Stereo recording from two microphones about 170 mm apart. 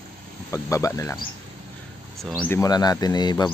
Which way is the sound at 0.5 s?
20° left (ahead or behind).